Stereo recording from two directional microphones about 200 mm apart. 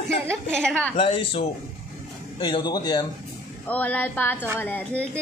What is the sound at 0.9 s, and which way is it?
Speech, 25° left (ahead or behind).